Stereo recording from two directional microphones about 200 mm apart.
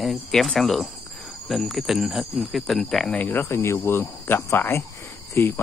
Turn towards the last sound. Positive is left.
turn(degrees=10)  # may be behind; listen again after turning